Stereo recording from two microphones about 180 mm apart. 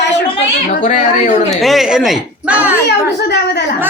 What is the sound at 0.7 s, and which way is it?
Speech, 45° left (ahead or behind).